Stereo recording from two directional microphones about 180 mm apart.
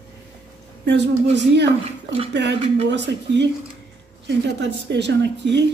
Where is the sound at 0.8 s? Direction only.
70° right (ahead or behind).